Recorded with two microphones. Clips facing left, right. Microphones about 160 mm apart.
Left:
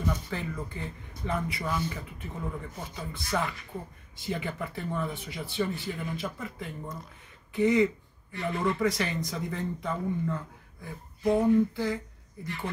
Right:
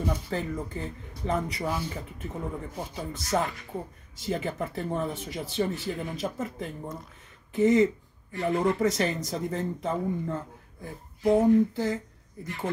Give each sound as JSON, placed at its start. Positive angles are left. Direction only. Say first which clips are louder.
{"t": 0.0, "sound": "speech", "louder": "right 2 dB", "side_deg": -35}